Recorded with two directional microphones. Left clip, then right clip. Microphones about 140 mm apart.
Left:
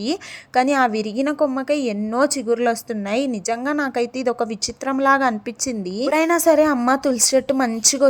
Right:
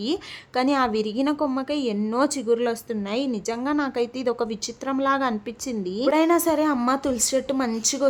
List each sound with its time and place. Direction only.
0.1 s a woman's voice: 25° left (ahead or behind)